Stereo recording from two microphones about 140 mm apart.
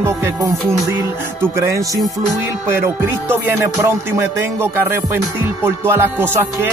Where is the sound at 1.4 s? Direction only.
20° right (ahead or behind).